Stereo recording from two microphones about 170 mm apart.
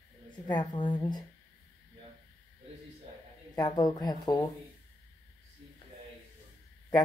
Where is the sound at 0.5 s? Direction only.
25° left (ahead or behind).